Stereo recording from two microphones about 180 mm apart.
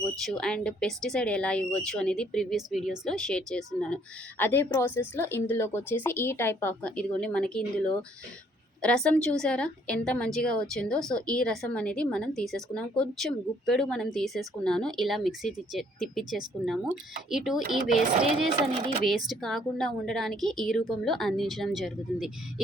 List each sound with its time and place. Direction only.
0.2 s speech: 5° left (ahead or behind)
18.8 s speech: 35° right (ahead or behind)
19.3 s speech: centre (ahead or behind)